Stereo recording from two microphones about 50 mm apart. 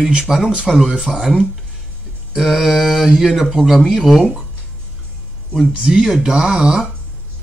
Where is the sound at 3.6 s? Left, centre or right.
Centre.